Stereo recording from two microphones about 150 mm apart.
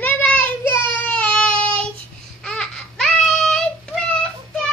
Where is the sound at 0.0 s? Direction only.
10° left (ahead or behind).